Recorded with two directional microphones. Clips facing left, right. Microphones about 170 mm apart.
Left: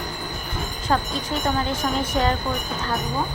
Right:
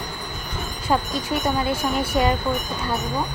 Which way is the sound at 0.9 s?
10° right (ahead or behind).